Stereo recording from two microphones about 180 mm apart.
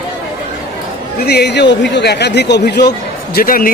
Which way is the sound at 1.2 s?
65° left (ahead or behind).